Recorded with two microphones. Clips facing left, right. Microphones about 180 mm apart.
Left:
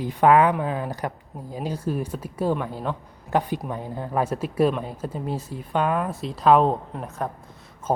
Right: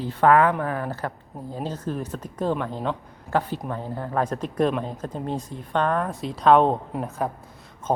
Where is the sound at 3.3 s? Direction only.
15° left (ahead or behind).